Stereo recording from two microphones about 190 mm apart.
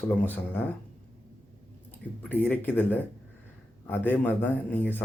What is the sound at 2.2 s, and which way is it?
A man's voice, 10° left (ahead or behind).